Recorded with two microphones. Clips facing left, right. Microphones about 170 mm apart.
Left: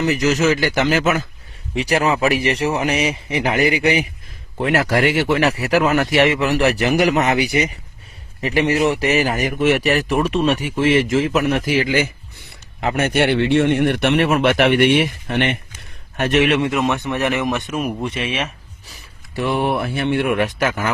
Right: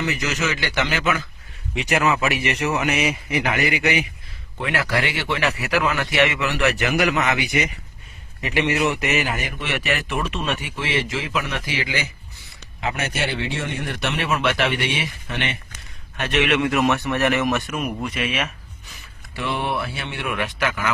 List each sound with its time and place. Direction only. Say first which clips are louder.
0.0 s speech: left 8 dB; 40° left (ahead or behind); by 15.5 s 55° left (ahead or behind)
16.1 s speech: left 5 dB; 45° left (ahead or behind)
16.7 s speech: left 1 dB; 15° left (ahead or behind)
19.4 s speech: left 6 dB; 45° left (ahead or behind)